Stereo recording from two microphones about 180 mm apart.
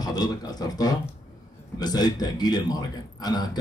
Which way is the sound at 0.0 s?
20° left (ahead or behind).